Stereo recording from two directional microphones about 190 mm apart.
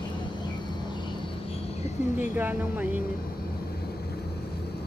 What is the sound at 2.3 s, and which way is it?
Speech, 10° right (ahead or behind).